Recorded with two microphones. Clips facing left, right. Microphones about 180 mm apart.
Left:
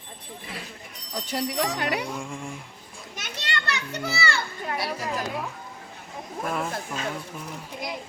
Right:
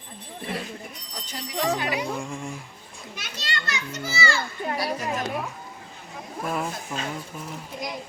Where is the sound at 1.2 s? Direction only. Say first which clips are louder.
Even; 65° left (ahead or behind).